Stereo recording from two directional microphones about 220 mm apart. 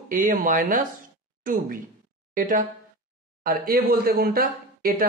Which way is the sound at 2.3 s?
40° right (ahead or behind).